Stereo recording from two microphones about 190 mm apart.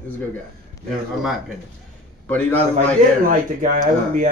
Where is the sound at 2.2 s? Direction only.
10° left (ahead or behind).